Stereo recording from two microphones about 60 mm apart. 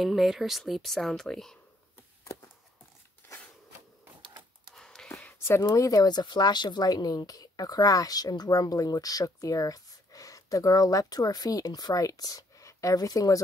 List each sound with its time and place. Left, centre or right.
0.0 s speech: centre
4.7 s a sound: centre
5.6 s speech: left